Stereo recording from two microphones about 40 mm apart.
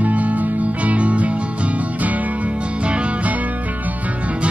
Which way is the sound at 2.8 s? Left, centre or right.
Right.